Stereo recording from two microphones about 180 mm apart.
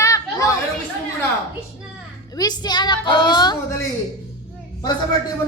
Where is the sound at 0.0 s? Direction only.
20° left (ahead or behind).